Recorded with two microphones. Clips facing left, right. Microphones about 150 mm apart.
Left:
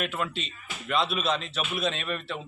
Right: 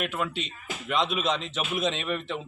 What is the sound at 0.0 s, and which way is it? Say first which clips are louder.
A man's voice: right 1 dB; 10° right (ahead or behind).